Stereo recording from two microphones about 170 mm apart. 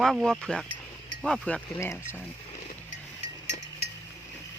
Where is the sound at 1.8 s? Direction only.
15° left (ahead or behind).